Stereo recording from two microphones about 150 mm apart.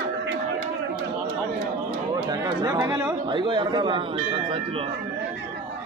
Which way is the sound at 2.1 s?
25° right (ahead or behind).